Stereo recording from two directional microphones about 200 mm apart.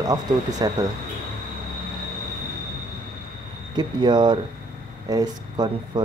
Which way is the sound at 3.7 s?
20° right (ahead or behind).